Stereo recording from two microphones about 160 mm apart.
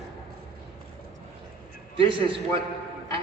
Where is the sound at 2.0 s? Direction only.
35° right (ahead or behind).